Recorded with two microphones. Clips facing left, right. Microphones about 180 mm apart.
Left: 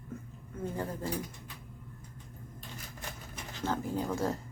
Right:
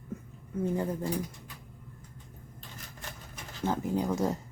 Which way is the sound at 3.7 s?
15° right (ahead or behind).